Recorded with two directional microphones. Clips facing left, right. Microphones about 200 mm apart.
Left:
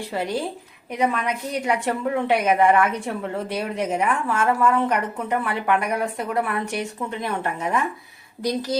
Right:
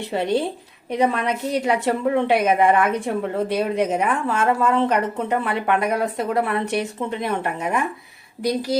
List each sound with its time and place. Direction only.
0.1 s a woman's voice: 25° right (ahead or behind)